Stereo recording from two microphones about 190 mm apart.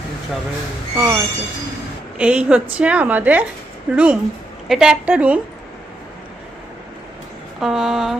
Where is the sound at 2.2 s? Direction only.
5° right (ahead or behind).